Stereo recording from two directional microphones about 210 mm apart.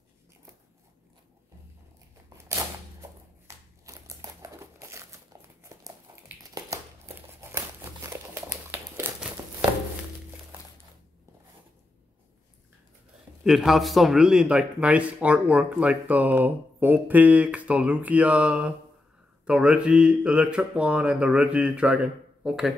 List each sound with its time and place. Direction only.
2.2 s a sound: 15° right (ahead or behind)
8.7 s crumpling: 10° right (ahead or behind)
13.4 s a man's voice: centre (ahead or behind)